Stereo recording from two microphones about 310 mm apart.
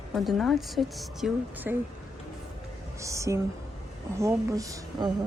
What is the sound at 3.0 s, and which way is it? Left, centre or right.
Speech, centre.